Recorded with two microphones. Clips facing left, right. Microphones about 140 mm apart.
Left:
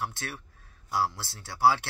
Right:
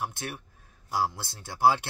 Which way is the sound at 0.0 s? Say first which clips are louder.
Right 1 dB; 15° right (ahead or behind).